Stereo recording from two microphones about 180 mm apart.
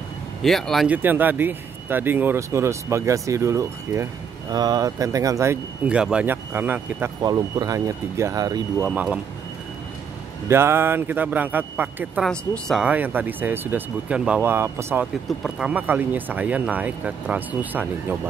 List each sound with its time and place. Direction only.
0.4 s speech: centre (ahead or behind)
10.5 s speech: 15° right (ahead or behind)
12.3 s speech: centre (ahead or behind)